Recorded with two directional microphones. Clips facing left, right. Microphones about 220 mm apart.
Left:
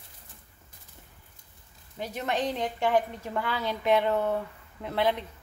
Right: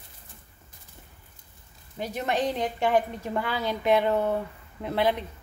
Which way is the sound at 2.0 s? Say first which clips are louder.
Right 2 dB; 10° right (ahead or behind).